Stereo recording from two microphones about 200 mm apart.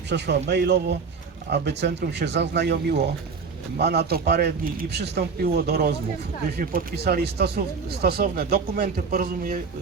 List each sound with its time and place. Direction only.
0.1 s a man's voice: 60° right (ahead or behind)